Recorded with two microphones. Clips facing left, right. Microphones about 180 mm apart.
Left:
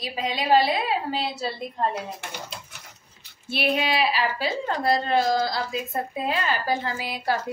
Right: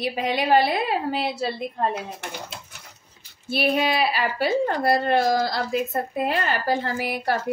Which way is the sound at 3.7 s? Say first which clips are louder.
Right 2 dB; 45° right (ahead or behind).